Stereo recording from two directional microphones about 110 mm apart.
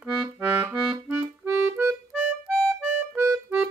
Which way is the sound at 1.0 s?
15° right (ahead or behind).